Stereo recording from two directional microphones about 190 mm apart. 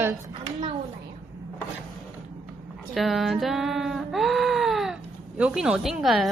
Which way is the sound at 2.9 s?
Centre (ahead or behind).